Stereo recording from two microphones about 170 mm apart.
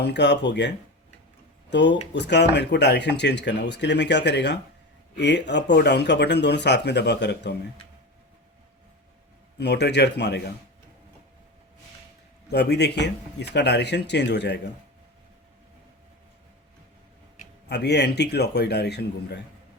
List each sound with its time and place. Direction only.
0.0 s speech: 90° left
1.7 s speech: 90° left
9.6 s a man's voice: 80° left
12.5 s a man's voice: 80° left
17.7 s a man's voice: 75° left (ahead or behind)